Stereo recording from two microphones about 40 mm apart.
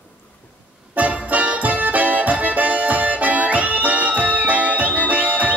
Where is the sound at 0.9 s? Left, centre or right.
Right.